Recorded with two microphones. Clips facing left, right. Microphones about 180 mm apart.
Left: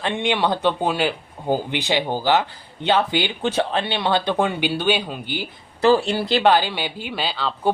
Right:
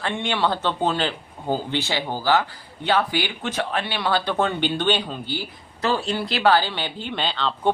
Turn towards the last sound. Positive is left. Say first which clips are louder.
# even
turn(degrees=5)  # may be behind; listen again after turning